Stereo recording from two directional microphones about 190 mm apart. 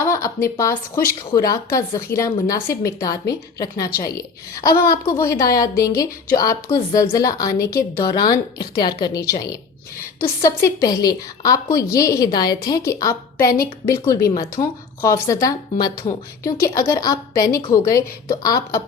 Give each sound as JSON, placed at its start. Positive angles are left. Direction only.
{"t": 0.0, "sound": "a sound", "side_deg": 15}
{"t": 0.4, "sound": "a woman's voice", "side_deg": 15}
{"t": 4.7, "sound": "a woman's voice", "side_deg": 50}
{"t": 5.0, "sound": "a woman's voice", "side_deg": 15}